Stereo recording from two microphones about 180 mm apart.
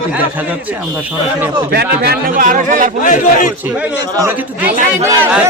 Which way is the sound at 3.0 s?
45° left (ahead or behind).